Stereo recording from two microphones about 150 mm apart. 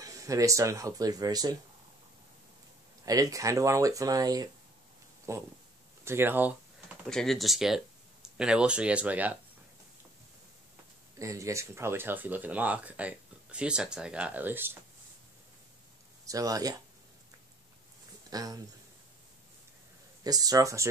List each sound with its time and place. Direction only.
0.0 s speech: 20° right (ahead or behind)
3.1 s speech: 25° right (ahead or behind)
7.1 s speech: 5° left (ahead or behind)
11.1 s speech: 20° right (ahead or behind)
16.3 s speech: 25° right (ahead or behind)
18.3 s speech: 25° right (ahead or behind)
20.2 s speech: 25° right (ahead or behind)